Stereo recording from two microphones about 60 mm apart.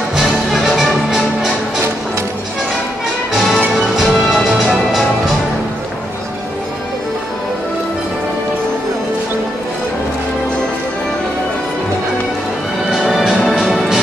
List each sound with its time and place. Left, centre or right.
0.1 s music: centre
3.7 s music: centre
12.9 s music: centre